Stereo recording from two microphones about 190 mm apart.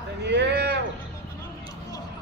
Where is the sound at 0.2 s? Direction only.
65° right (ahead or behind).